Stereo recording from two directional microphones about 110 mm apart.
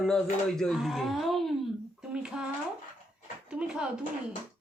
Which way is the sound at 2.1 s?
5° right (ahead or behind).